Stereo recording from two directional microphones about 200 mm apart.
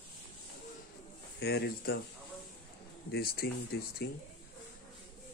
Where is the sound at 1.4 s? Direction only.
55° left (ahead or behind).